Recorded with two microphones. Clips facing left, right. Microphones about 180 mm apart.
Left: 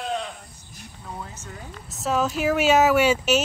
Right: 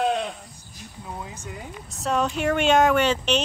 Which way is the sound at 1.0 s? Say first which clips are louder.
Right 1 dB; 10° right (ahead or behind).